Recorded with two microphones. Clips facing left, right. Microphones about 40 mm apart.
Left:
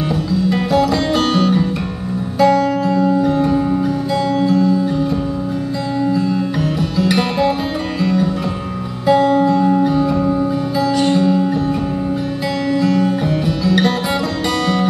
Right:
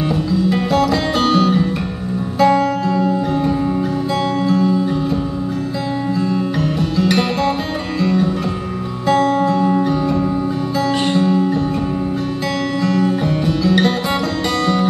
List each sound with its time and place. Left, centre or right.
0.1 s music: centre
9.2 s music: centre
9.5 s music: centre
10.9 s music: right
11.1 s music: centre
12.8 s music: centre